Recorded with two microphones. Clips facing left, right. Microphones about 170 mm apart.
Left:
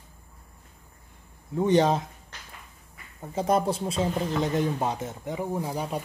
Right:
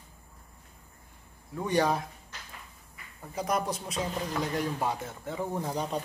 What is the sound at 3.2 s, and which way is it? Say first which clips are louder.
Speech: left 6 dB; 25° left (ahead or behind).